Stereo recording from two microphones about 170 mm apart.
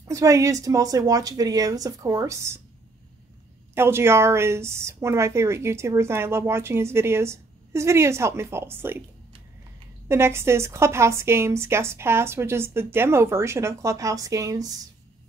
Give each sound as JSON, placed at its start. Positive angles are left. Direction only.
{"t": 0.1, "sound": "a woman's voice", "side_deg": -20}
{"t": 3.7, "sound": "a woman's voice", "side_deg": -15}
{"t": 10.0, "sound": "a woman's voice", "side_deg": -15}